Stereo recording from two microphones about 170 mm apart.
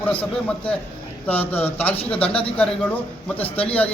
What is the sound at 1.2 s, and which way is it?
Speech, 10° left (ahead or behind).